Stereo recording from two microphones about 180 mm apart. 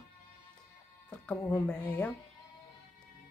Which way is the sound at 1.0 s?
10° left (ahead or behind).